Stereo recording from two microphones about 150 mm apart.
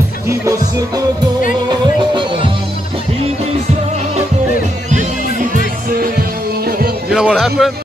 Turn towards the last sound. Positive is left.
turn(degrees=-5)  # may be behind; listen again after turning